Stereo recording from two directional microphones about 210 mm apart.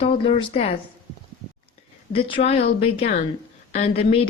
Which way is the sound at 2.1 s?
30° left (ahead or behind).